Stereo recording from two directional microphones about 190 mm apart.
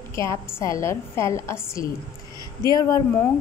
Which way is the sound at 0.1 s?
15° left (ahead or behind).